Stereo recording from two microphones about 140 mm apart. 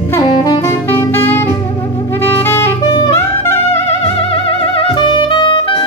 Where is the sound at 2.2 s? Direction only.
15° left (ahead or behind).